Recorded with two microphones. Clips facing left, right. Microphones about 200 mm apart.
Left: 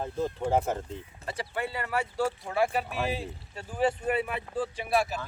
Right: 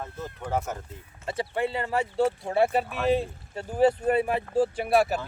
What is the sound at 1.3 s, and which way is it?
Speech, 25° right (ahead or behind).